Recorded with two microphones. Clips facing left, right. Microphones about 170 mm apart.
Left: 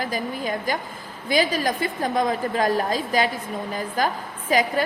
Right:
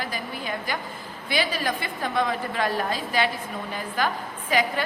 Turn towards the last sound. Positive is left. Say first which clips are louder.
# left 3 dB
turn(degrees=40)  # may be behind; listen again after turning